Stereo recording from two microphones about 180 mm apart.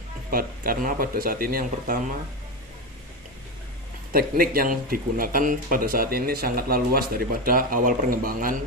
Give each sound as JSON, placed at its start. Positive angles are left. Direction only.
{"t": 0.3, "sound": "speech", "side_deg": -55}
{"t": 4.1, "sound": "speech", "side_deg": -55}